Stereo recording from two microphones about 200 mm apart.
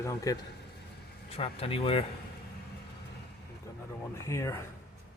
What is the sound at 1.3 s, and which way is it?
Speech, 30° left (ahead or behind).